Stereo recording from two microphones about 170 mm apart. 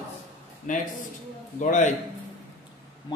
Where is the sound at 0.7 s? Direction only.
45° left (ahead or behind).